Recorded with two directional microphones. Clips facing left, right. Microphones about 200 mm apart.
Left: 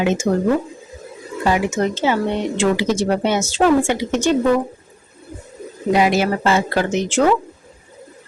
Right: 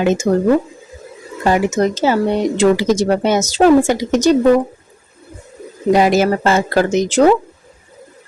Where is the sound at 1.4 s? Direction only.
45° right (ahead or behind).